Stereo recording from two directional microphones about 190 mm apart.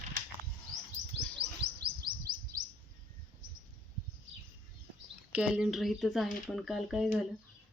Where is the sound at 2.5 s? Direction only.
20° right (ahead or behind).